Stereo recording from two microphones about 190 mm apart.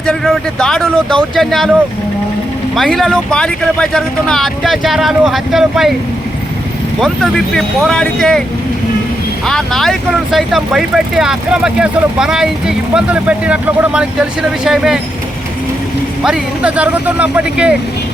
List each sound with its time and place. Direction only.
0.0 s speech: 5° left (ahead or behind)
2.7 s speech: centre (ahead or behind)
7.0 s speech: centre (ahead or behind)
9.5 s speech: centre (ahead or behind)
16.2 s speech: 5° right (ahead or behind)